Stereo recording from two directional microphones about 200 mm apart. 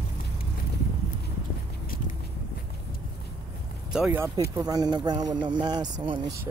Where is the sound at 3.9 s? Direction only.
5° right (ahead or behind).